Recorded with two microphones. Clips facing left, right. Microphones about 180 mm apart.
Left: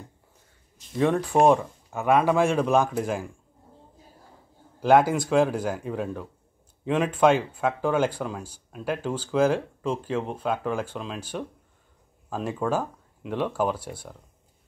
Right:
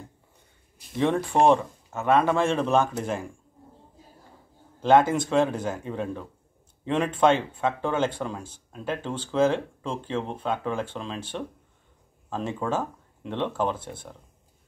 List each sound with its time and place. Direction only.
0.9 s speech: 5° left (ahead or behind)
5.3 s speech: 5° left (ahead or behind)
12.3 s speech: 10° left (ahead or behind)